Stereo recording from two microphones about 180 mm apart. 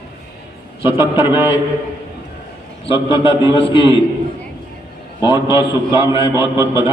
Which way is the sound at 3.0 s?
30° left (ahead or behind).